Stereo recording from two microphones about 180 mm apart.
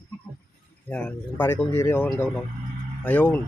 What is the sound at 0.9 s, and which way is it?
Speech, 10° left (ahead or behind).